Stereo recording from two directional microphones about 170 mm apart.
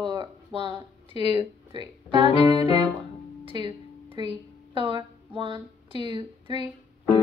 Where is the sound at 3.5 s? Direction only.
30° right (ahead or behind).